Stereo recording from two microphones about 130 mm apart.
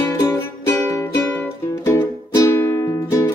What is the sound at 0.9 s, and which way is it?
Music, 15° left (ahead or behind).